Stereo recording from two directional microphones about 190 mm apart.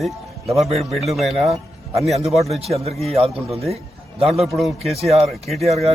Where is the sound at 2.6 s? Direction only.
35° right (ahead or behind).